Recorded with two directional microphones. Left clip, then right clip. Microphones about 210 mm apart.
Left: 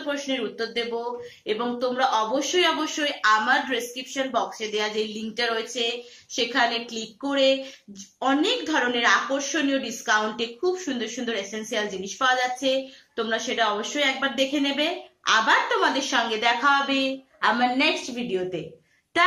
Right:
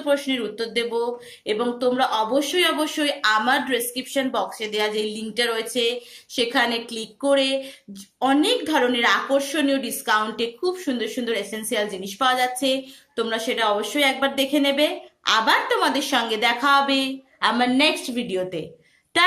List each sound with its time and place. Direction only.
0.0 s a woman's voice: 55° right (ahead or behind)